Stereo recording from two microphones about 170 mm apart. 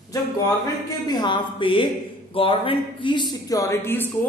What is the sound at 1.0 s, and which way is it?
A woman's voice, 30° left (ahead or behind).